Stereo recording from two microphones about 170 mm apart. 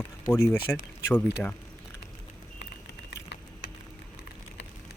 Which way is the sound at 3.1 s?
90° left.